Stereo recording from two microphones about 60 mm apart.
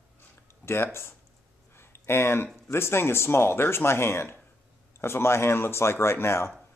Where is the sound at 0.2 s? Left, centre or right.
Left.